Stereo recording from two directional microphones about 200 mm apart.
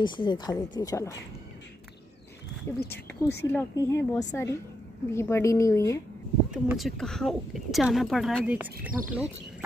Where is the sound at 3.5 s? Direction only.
10° left (ahead or behind).